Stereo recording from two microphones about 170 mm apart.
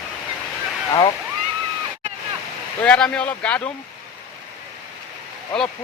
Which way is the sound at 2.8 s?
5° left (ahead or behind).